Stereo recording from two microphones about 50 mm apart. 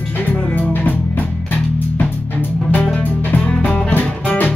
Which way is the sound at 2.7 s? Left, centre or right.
Left.